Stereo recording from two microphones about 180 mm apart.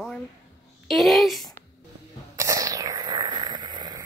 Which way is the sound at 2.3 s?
20° right (ahead or behind).